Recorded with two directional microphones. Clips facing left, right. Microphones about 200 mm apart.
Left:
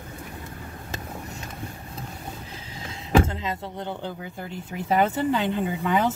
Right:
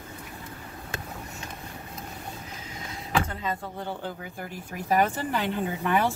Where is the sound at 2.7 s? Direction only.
25° left (ahead or behind).